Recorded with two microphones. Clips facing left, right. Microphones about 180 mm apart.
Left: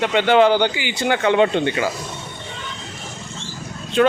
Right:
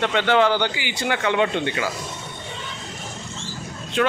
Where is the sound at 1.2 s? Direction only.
35° left (ahead or behind).